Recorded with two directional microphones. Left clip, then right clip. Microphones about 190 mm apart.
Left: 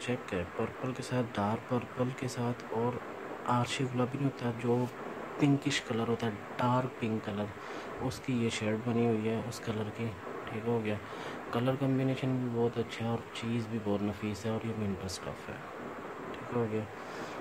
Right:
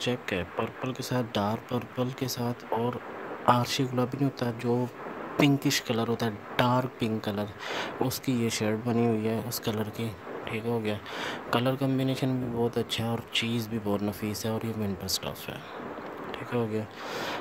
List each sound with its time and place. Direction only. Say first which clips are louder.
0.0 s speech: right 5 dB; 45° right (ahead or behind)
16.5 s speech: right 3 dB; 50° right (ahead or behind)